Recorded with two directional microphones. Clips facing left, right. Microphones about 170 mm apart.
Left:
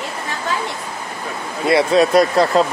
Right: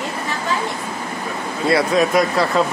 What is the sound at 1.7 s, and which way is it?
Speech, 30° left (ahead or behind).